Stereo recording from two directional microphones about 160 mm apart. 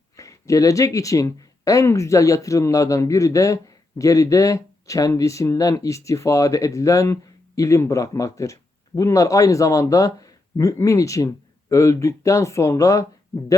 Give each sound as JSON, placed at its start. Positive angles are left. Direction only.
{"t": 0.2, "sound": "speech", "side_deg": 20}